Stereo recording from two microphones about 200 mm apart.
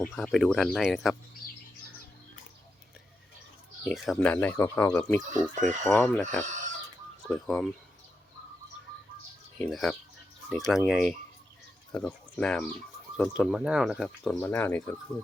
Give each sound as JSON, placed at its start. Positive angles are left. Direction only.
{"t": 0.0, "sound": "speech", "side_deg": 0}
{"t": 3.8, "sound": "speech", "side_deg": 0}
{"t": 9.6, "sound": "speech", "side_deg": 0}
{"t": 14.3, "sound": "speech", "side_deg": 10}